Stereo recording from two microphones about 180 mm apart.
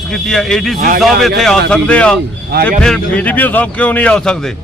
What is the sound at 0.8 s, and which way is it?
Speech, 55° right (ahead or behind).